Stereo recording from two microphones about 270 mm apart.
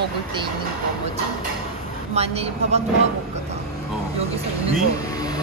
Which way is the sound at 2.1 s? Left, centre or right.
Right.